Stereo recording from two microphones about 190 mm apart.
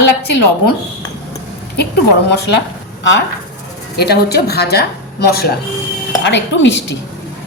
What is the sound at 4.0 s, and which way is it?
A woman's voice, 55° left (ahead or behind).